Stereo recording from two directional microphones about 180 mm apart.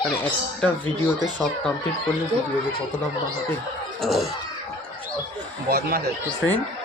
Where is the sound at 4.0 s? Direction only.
Centre (ahead or behind).